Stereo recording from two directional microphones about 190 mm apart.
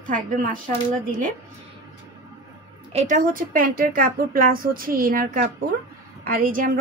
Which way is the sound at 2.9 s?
40° right (ahead or behind).